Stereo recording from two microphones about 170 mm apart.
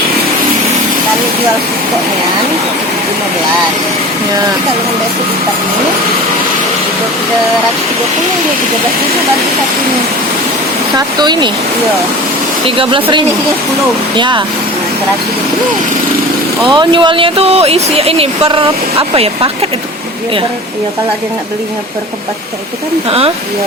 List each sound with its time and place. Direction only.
10.9 s speech: 25° right (ahead or behind)
12.6 s speech: 30° right (ahead or behind)
16.6 s speech: 30° right (ahead or behind)